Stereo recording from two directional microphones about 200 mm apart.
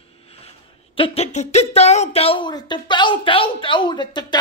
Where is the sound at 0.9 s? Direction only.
30° left (ahead or behind).